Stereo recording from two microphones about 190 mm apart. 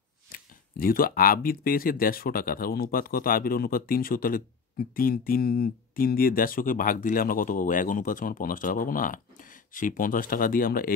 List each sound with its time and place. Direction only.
0.3 s speech: 50° left (ahead or behind)